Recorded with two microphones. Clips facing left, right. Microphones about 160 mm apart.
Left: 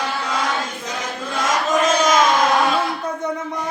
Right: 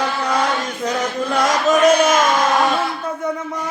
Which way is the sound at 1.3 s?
65° right (ahead or behind).